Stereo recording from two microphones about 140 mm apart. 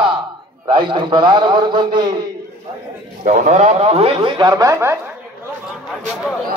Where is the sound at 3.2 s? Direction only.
55° right (ahead or behind); by 5.0 s 20° right (ahead or behind).